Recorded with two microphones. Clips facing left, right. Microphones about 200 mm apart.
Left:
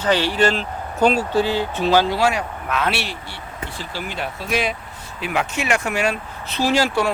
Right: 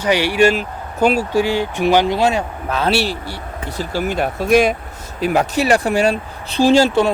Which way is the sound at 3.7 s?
45° right (ahead or behind).